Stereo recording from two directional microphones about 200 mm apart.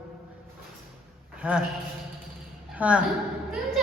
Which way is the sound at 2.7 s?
5° right (ahead or behind).